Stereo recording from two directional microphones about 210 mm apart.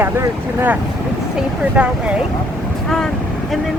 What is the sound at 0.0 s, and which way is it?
Speech, 10° right (ahead or behind).